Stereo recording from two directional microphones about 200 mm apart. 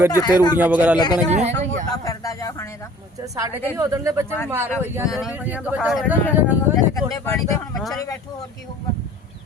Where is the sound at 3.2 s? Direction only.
15° right (ahead or behind).